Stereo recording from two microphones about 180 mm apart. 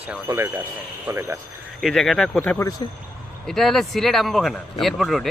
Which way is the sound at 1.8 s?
Centre (ahead or behind).